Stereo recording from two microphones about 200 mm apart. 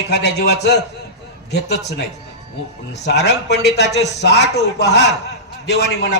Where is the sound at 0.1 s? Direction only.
55° left (ahead or behind).